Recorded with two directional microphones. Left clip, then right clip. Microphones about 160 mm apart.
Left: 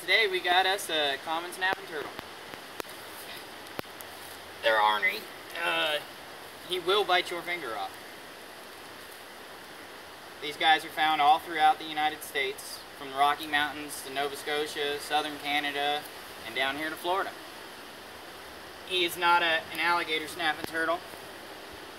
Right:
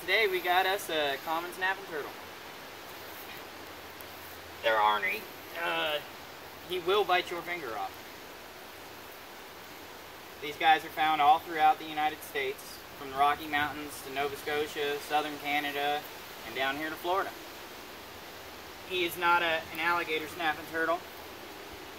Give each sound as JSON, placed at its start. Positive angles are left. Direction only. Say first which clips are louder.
{"t": 0.0, "sound": "speech", "louder": "left 2 dB", "side_deg": -5}
{"t": 4.6, "sound": "speech", "louder": "left 2 dB", "side_deg": -5}
{"t": 10.4, "sound": "speech", "louder": "left 1 dB", "side_deg": -5}
{"t": 19.1, "sound": "speech", "louder": "left 2 dB", "side_deg": 0}